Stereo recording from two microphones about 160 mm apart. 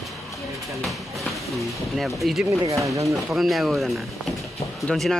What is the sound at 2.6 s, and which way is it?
Speech, 20° right (ahead or behind).